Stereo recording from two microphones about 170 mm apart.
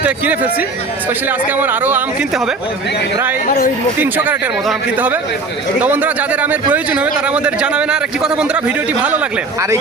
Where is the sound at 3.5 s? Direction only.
55° left (ahead or behind).